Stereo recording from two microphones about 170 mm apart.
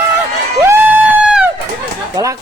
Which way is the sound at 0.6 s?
10° right (ahead or behind).